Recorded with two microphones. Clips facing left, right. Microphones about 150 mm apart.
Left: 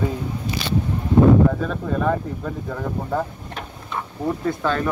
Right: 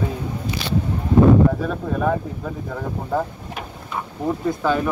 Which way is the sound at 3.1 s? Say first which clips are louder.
Right 1 dB; 5° right (ahead or behind).